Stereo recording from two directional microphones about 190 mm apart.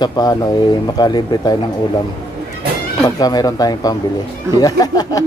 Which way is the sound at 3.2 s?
20° left (ahead or behind).